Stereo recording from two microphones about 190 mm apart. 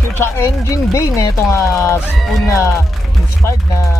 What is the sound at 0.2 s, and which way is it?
Speech, 15° left (ahead or behind).